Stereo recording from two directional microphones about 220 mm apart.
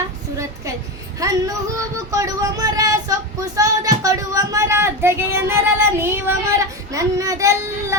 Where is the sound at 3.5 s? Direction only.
15° right (ahead or behind).